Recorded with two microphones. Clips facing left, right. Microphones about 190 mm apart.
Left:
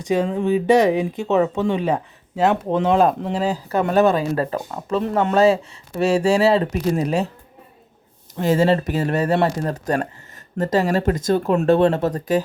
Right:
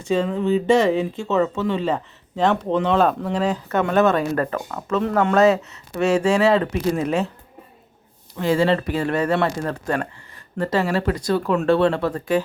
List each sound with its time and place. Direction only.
0.0 s speech: 15° left (ahead or behind)
3.2 s speech: 25° left (ahead or behind)
8.4 s speech: 40° left (ahead or behind)